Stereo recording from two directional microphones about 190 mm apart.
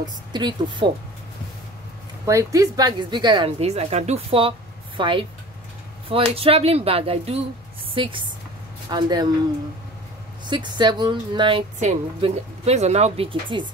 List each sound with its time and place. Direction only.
0.0 s a woman's voice: 25° right (ahead or behind)
2.2 s a woman's voice: 15° right (ahead or behind)
6.3 s a woman's voice: 30° right (ahead or behind)
10.4 s a woman's voice: 25° right (ahead or behind)
11.8 s speech: 35° right (ahead or behind)